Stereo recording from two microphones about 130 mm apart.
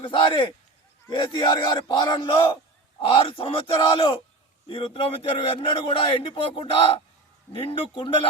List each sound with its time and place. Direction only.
0.0 s a man's voice: 40° left (ahead or behind)